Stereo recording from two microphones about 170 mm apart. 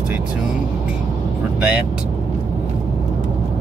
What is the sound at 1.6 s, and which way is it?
Speech, 10° right (ahead or behind).